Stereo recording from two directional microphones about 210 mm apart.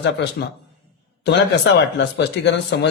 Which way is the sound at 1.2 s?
55° left (ahead or behind).